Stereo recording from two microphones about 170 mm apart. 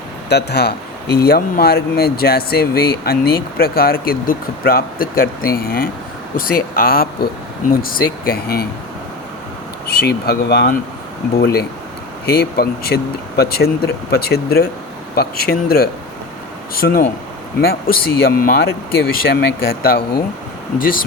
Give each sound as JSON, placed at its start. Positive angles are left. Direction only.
{"t": 0.3, "sound": "speech", "side_deg": 75}
{"t": 9.8, "sound": "speech", "side_deg": 70}
{"t": 20.7, "sound": "speech", "side_deg": 55}